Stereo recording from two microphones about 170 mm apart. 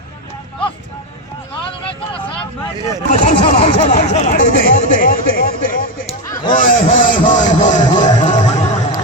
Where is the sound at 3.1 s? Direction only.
45° left (ahead or behind).